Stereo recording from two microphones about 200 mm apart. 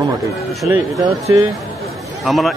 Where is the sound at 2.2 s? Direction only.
Centre (ahead or behind).